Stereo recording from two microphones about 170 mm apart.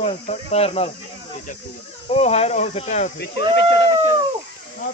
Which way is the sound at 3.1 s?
80° left.